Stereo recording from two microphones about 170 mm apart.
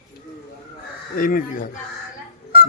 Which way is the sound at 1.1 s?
55° left (ahead or behind).